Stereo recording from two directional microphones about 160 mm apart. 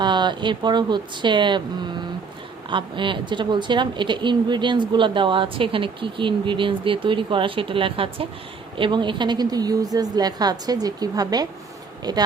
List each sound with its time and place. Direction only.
0.0 s a woman's voice: 30° right (ahead or behind)